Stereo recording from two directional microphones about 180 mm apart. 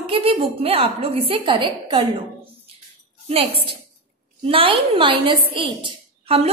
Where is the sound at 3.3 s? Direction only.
30° right (ahead or behind).